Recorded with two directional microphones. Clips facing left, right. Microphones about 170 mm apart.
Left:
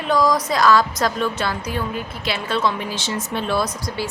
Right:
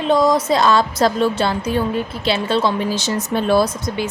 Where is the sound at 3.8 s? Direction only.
20° right (ahead or behind).